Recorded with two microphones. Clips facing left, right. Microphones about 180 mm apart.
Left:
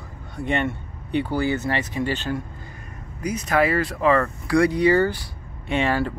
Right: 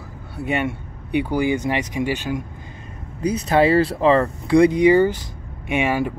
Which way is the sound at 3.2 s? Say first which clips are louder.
Right 4 dB; 30° right (ahead or behind).